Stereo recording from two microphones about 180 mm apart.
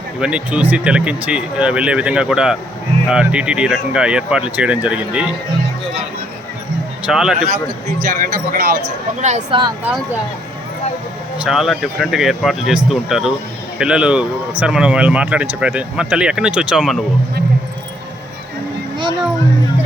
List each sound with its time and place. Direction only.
0.2 s speech: 5° right (ahead or behind)
7.0 s speech: 5° right (ahead or behind)
8.0 s speech: 55° right (ahead or behind)
9.2 s speech: 40° right (ahead or behind)
11.4 s speech: centre (ahead or behind)